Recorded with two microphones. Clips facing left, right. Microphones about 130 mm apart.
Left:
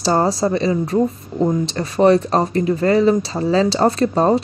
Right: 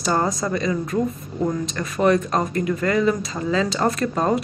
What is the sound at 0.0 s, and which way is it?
Speech, 30° left (ahead or behind).